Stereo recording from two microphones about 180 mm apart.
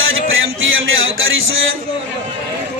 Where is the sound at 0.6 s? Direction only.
90° right.